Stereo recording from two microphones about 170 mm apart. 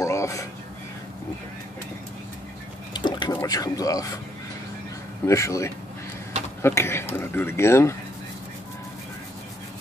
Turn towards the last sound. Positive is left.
turn(degrees=15)  # may be behind; listen again after turning